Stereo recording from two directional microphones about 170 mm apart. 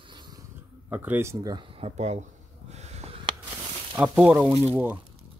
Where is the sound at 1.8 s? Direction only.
40° right (ahead or behind).